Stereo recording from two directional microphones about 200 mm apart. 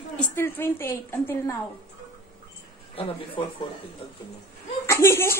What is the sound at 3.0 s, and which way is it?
Speech, 30° left (ahead or behind).